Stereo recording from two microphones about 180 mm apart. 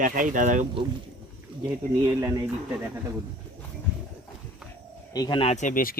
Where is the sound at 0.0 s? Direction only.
45° right (ahead or behind).